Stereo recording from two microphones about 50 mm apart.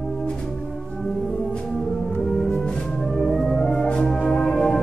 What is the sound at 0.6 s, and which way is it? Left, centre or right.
Music, centre.